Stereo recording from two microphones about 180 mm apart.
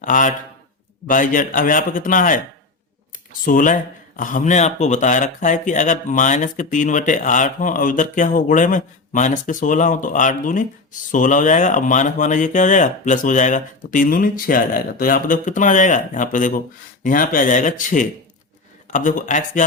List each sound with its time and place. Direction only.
0.0 s speech: 45° left (ahead or behind)
3.4 s speech: 50° left (ahead or behind)